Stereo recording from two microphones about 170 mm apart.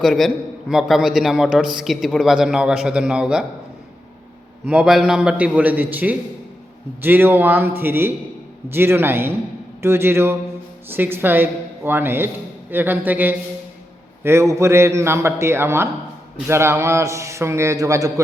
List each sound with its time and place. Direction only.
0.0 s a man's voice: centre (ahead or behind)
4.6 s a man's voice: 5° right (ahead or behind)